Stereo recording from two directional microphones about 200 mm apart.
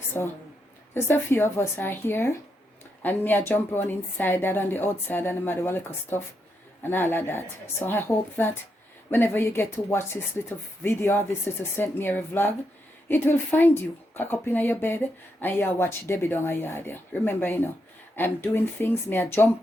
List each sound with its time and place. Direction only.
0.1 s speech: 10° left (ahead or behind)